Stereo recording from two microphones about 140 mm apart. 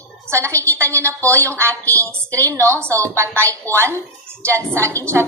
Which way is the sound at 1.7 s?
10° left (ahead or behind).